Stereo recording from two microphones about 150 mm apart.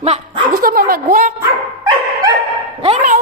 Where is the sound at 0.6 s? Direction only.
75° right (ahead or behind).